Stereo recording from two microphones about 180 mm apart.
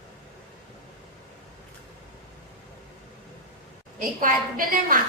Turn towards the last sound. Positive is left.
turn(degrees=-50)  # may be behind; listen again after turning